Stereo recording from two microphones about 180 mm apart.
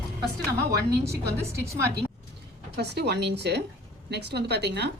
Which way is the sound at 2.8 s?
65° right (ahead or behind).